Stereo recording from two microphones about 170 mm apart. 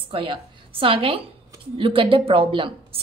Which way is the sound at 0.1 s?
30° right (ahead or behind).